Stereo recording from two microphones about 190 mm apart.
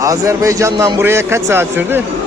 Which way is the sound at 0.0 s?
15° right (ahead or behind).